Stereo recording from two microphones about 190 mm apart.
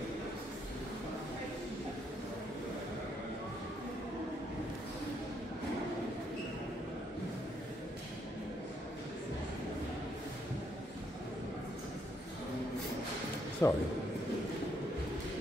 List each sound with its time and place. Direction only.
13.6 s a man's voice: 15° left (ahead or behind)